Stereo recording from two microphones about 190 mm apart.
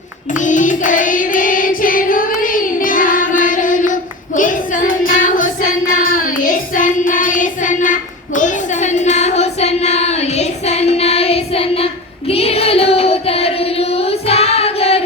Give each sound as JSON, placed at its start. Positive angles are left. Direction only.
{"t": 0.3, "sound": "music", "side_deg": 40}
{"t": 4.4, "sound": "child singing", "side_deg": 45}